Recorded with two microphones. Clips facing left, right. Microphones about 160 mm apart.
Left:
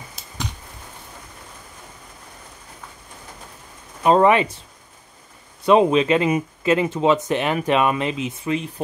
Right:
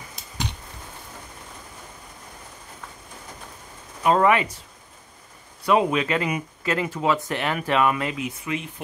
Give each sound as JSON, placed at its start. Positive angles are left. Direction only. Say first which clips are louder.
{"t": 0.2, "sound": "a sound", "louder": "left 1 dB", "side_deg": 0}
{"t": 4.0, "sound": "speech", "louder": "left 4 dB", "side_deg": 25}
{"t": 5.7, "sound": "speech", "louder": "left 6 dB", "side_deg": 25}